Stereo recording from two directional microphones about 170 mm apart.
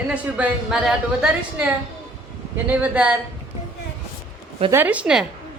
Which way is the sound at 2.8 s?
5° right (ahead or behind).